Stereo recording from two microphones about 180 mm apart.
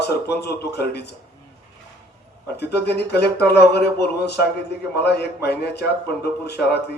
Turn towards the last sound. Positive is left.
turn(degrees=65)  # may be behind; listen again after turning